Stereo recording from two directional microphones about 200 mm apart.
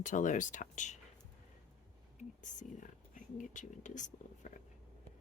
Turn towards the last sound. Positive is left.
turn(degrees=40)  # may be behind; listen again after turning